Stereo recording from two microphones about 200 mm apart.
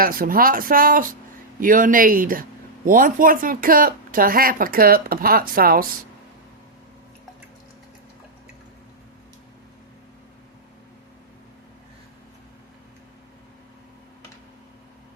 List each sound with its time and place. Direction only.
0.0 s speech: 45° right (ahead or behind)